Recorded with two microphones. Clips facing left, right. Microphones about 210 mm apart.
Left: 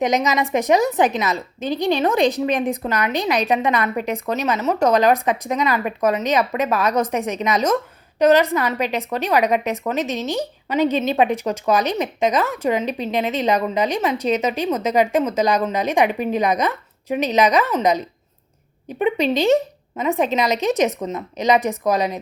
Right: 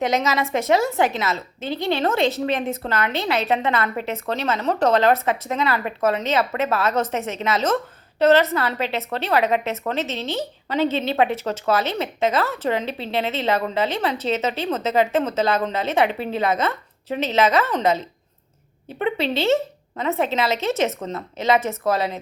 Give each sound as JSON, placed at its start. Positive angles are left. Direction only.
{"t": 0.0, "sound": "a woman's voice", "side_deg": 15}